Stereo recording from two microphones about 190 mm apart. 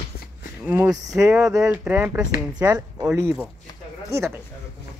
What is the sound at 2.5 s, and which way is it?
Speech, 20° right (ahead or behind).